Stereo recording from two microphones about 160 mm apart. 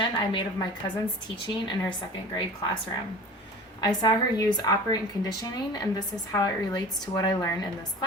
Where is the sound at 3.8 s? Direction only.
25° left (ahead or behind).